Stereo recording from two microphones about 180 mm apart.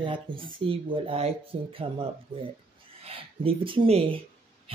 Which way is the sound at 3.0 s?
30° right (ahead or behind).